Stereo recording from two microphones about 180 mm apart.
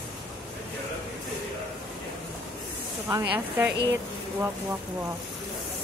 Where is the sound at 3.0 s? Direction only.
15° right (ahead or behind).